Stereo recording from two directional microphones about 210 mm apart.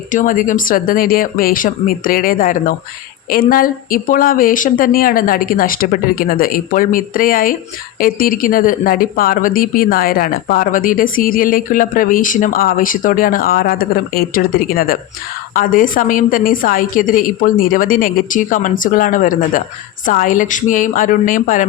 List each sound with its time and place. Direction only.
0.1 s a woman's voice: 40° left (ahead or behind)